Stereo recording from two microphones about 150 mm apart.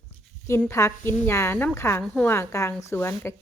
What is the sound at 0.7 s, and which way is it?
A woman's voice, 20° left (ahead or behind).